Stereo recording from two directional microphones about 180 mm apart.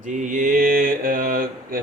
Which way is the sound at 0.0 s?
45° right (ahead or behind).